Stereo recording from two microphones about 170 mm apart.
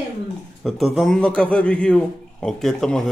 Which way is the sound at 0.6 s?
Centre (ahead or behind).